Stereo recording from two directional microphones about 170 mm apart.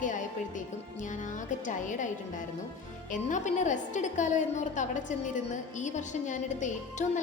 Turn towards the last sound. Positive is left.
turn(degrees=45)  # may be behind; listen again after turning